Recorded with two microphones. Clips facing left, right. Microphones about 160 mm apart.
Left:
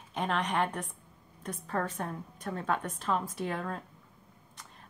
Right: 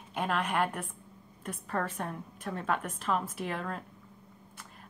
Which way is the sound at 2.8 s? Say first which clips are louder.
Even; 5° right (ahead or behind).